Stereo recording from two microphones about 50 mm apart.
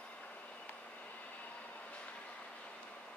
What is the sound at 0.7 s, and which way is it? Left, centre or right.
Train, left.